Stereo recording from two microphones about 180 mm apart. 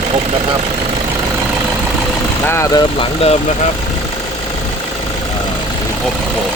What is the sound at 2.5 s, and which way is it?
Speech, 15° left (ahead or behind).